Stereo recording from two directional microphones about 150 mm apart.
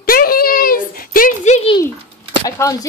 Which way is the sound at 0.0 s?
75° left (ahead or behind).